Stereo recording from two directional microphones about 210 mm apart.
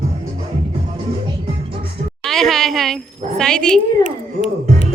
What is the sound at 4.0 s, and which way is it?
Music, 30° left (ahead or behind).